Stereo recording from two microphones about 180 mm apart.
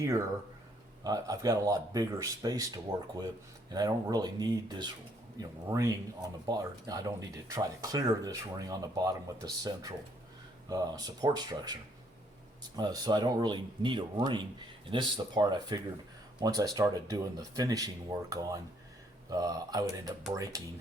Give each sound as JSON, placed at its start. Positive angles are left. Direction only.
{"t": 1.0, "sound": "speech", "side_deg": -20}